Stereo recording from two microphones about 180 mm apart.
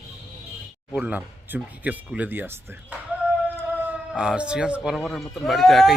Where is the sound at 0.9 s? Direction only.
5° right (ahead or behind).